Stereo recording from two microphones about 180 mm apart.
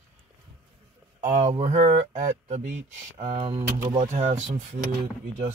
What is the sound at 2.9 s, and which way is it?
Speech, 25° right (ahead or behind).